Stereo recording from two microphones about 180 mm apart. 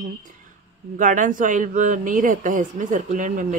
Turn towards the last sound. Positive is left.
turn(degrees=-45)  # may be behind; listen again after turning